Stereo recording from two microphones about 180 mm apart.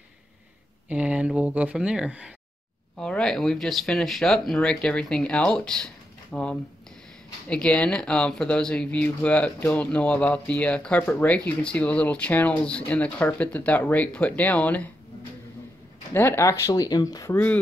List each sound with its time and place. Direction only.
0.8 s speech: 5° right (ahead or behind)
16.1 s speech: 15° left (ahead or behind)